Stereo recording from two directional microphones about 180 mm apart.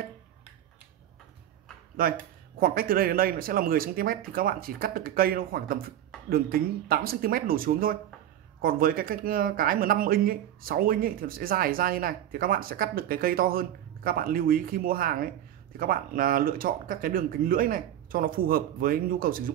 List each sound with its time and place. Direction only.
2.6 s speech: 55° right (ahead or behind)
6.1 s a sound: 5° left (ahead or behind)
6.9 s speech: 55° right (ahead or behind)